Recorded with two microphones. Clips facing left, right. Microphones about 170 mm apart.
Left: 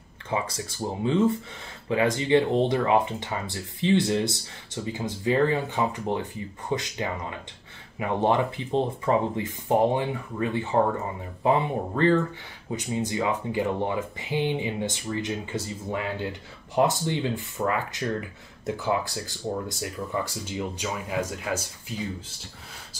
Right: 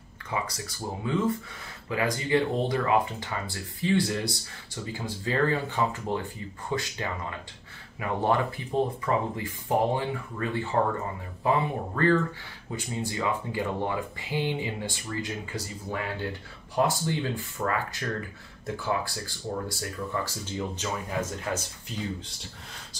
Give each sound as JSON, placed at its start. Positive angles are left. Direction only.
{"t": 0.3, "sound": "speech", "side_deg": 25}